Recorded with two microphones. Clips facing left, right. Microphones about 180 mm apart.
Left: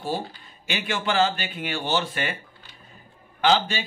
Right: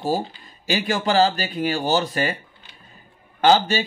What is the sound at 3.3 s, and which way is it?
Speech, 40° right (ahead or behind).